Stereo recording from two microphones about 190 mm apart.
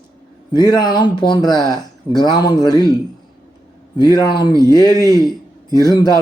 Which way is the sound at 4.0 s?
20° left (ahead or behind).